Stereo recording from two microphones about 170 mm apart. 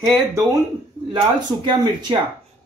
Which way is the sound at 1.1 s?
25° right (ahead or behind).